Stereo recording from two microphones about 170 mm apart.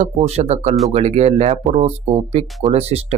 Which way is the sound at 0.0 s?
40° right (ahead or behind).